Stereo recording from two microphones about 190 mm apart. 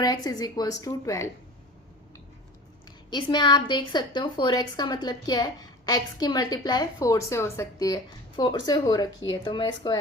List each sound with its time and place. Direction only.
0.0 s a woman's voice: 20° left (ahead or behind)
3.1 s a woman's voice: 25° left (ahead or behind)